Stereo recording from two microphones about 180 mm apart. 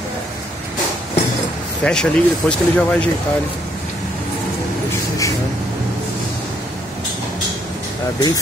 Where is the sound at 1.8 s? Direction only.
5° left (ahead or behind).